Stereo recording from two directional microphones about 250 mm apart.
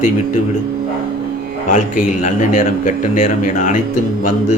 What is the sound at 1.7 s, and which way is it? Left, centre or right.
A man's voice, left.